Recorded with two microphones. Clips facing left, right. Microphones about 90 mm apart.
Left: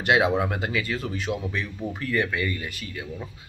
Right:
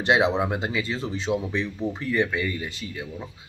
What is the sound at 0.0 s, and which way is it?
Speech, 25° right (ahead or behind).